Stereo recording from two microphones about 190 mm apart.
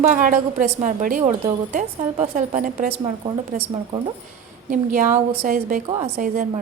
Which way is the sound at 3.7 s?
25° right (ahead or behind).